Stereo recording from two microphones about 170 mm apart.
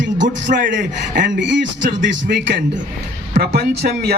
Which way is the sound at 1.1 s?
90° right.